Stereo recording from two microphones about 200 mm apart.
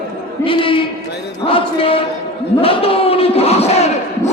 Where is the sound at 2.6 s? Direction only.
30° left (ahead or behind).